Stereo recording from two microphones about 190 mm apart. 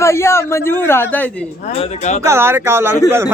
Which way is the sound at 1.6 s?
35° left (ahead or behind).